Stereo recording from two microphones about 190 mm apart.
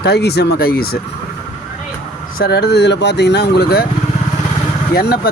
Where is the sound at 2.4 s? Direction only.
60° left (ahead or behind).